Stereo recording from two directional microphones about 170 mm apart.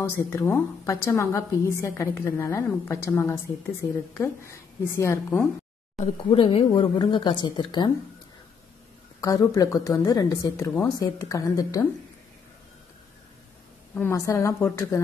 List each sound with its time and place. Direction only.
0.0 s a woman's voice: 15° left (ahead or behind)
6.1 s speech: 30° left (ahead or behind)
9.2 s speech: 20° left (ahead or behind)
13.9 s a woman's voice: 15° left (ahead or behind)